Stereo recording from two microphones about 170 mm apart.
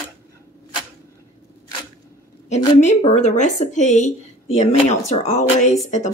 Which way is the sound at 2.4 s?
40° left (ahead or behind).